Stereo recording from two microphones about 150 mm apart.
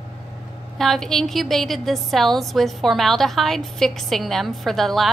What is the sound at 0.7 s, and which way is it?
A woman's voice, centre (ahead or behind).